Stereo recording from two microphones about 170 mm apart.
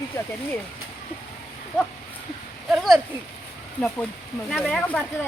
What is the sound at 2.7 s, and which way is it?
Speech, centre (ahead or behind).